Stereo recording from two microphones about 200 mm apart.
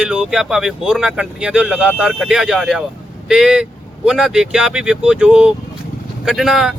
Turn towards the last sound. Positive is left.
turn(degrees=0)  # may be behind; listen again after turning